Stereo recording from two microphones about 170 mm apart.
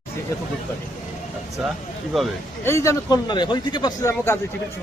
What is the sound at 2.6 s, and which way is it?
Speech, 15° left (ahead or behind).